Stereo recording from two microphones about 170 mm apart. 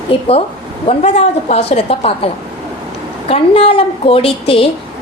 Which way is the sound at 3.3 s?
35° left (ahead or behind).